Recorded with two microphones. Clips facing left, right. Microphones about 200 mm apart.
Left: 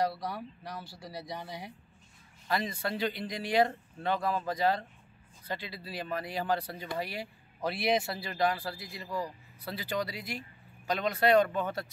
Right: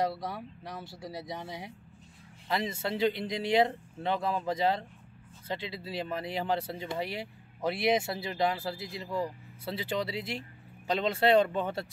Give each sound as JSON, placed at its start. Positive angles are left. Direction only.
{"t": 0.0, "sound": "speech", "side_deg": -20}